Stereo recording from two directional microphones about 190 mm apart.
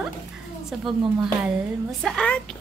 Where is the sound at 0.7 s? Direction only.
Centre (ahead or behind).